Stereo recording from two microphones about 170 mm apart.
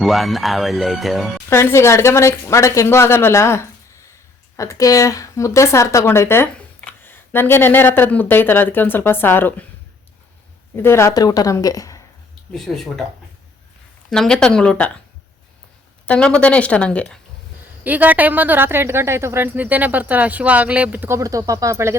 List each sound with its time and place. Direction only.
0.0 s speech: centre (ahead or behind)
1.5 s a woman's voice: 15° left (ahead or behind)
10.8 s a woman's voice: 15° left (ahead or behind)
12.5 s speech: centre (ahead or behind)
14.1 s speech: 5° left (ahead or behind)
16.0 s a woman's voice: 5° left (ahead or behind)
17.8 s speech: 10° right (ahead or behind)